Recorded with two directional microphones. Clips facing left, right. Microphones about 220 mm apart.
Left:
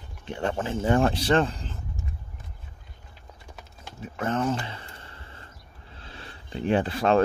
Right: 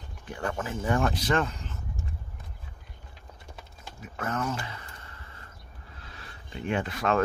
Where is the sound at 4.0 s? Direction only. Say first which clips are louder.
Left 5 dB; 30° left (ahead or behind).